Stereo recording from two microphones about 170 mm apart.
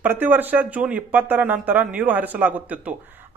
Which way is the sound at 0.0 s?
10° right (ahead or behind).